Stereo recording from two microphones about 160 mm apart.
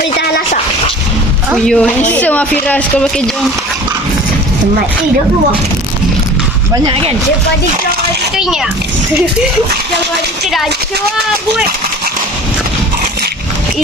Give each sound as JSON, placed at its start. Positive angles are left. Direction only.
{"t": 1.6, "sound": "speech", "side_deg": 5}
{"t": 6.8, "sound": "speech", "side_deg": -35}